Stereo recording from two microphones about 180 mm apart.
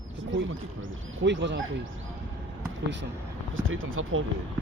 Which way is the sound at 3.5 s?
90° right.